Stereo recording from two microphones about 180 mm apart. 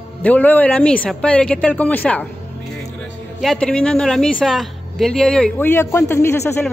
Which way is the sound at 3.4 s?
5° left (ahead or behind).